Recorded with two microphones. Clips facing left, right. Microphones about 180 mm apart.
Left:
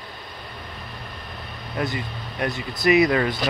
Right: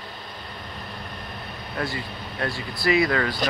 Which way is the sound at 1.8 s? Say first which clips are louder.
Left 3 dB; 20° left (ahead or behind).